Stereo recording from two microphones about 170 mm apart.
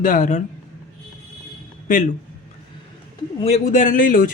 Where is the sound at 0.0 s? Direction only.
50° left (ahead or behind).